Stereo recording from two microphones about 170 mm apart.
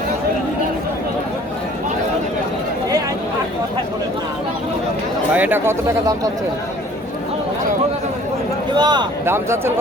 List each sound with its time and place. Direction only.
5.3 s speech: 10° right (ahead or behind)
8.7 s speech: 25° right (ahead or behind)
9.2 s speech: 15° right (ahead or behind)